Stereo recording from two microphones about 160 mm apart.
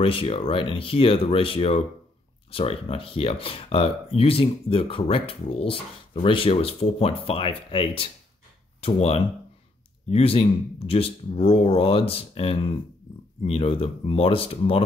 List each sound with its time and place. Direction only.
0.0 s speech: 35° left (ahead or behind)